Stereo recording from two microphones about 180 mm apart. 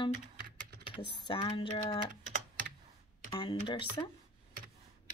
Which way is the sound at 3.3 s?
30° left (ahead or behind).